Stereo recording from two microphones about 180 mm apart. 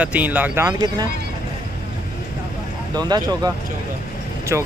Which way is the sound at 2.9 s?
20° right (ahead or behind).